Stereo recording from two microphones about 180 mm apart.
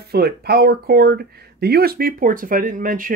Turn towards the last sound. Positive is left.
turn(degrees=-50)  # may be behind; listen again after turning